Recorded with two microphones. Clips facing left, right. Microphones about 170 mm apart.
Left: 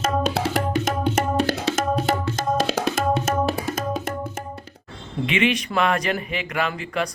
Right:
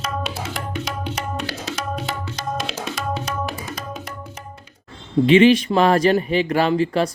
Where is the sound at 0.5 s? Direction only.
45° left (ahead or behind).